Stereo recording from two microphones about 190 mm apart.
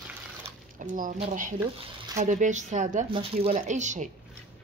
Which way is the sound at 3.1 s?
30° right (ahead or behind).